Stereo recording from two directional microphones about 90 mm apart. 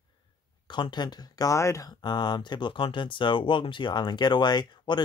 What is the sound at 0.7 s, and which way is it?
Speech, 55° left (ahead or behind).